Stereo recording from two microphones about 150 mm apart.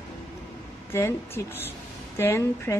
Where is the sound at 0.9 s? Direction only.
15° left (ahead or behind).